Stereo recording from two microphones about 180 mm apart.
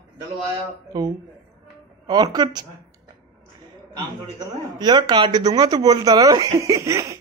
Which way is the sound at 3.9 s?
20° right (ahead or behind).